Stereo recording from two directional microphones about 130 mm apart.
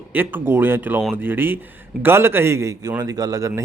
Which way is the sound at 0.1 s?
15° right (ahead or behind).